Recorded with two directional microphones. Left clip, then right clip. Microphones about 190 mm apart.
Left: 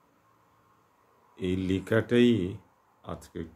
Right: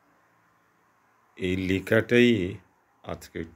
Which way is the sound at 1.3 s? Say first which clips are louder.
Right 3 dB; 5° right (ahead or behind).